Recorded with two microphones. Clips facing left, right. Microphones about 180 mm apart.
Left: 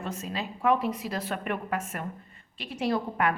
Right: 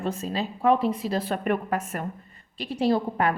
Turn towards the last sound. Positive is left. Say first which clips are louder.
# right 4 dB
turn(degrees=-30)  # may be behind; listen again after turning